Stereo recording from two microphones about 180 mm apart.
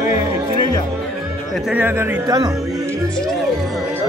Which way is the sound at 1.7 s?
10° right (ahead or behind).